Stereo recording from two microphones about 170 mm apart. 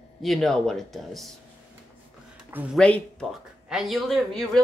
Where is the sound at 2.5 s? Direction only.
5° right (ahead or behind).